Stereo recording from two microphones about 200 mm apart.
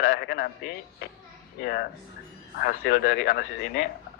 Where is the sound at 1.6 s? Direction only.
50° left (ahead or behind).